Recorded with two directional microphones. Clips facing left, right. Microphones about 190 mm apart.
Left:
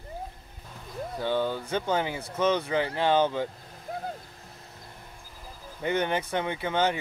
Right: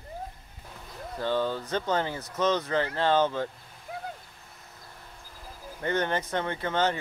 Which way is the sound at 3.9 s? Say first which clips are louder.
Left 3 dB; 40° left (ahead or behind).